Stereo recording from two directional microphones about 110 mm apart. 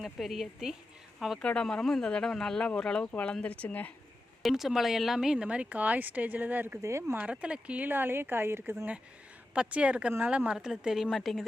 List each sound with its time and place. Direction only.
0.0 s speech: centre (ahead or behind)
4.4 s speech: 5° right (ahead or behind)
6.8 s speech: 25° right (ahead or behind)
7.2 s speech: 10° right (ahead or behind)
9.6 s speech: 10° right (ahead or behind)